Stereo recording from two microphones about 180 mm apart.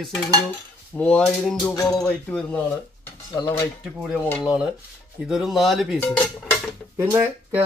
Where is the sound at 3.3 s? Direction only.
20° left (ahead or behind).